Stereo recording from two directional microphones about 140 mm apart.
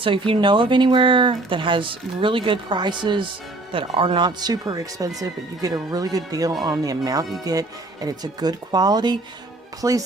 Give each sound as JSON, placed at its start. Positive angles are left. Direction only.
{"t": 0.0, "sound": "speech", "side_deg": -40}